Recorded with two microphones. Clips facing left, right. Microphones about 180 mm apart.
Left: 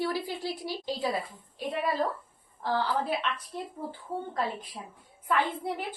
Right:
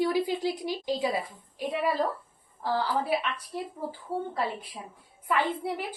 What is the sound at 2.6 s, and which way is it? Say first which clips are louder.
Speech: right 1 dB; 10° right (ahead or behind).